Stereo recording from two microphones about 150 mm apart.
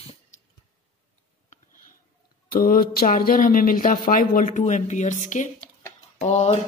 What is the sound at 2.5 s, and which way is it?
A woman's voice, 85° left.